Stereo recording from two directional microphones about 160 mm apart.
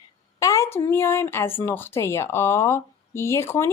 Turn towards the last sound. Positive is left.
turn(degrees=15)  # may be behind; listen again after turning